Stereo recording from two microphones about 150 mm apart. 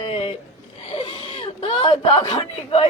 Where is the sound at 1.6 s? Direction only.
35° left (ahead or behind).